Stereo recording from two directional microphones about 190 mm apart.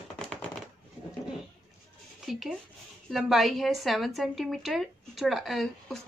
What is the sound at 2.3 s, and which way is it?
A woman's voice, centre (ahead or behind).